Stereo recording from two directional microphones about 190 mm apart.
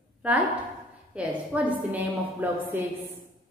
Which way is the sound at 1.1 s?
5° right (ahead or behind).